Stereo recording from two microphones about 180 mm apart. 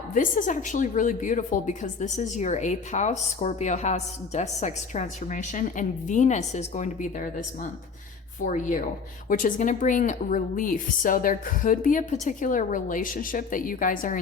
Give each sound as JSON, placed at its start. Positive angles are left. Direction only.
{"t": 0.1, "sound": "a woman's voice", "side_deg": 45}